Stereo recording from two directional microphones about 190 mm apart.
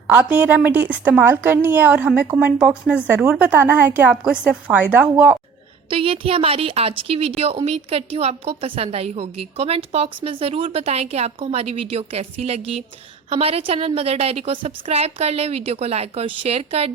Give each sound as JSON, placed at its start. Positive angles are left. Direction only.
{"t": 0.1, "sound": "speech", "side_deg": -10}
{"t": 5.9, "sound": "a woman's voice", "side_deg": -30}